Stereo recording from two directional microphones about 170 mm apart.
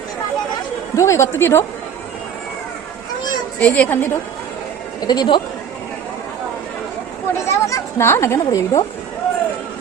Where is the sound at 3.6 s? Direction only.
10° left (ahead or behind).